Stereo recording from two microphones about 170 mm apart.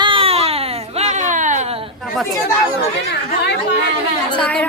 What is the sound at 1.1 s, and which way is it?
Speech, 45° right (ahead or behind).